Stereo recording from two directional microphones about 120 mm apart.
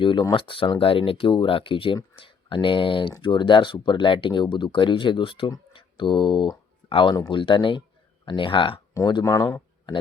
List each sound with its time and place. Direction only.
0.0 s speech: 45° left (ahead or behind)
9.2 s speech: 25° left (ahead or behind)